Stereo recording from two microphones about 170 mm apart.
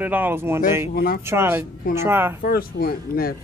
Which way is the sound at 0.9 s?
60° left (ahead or behind).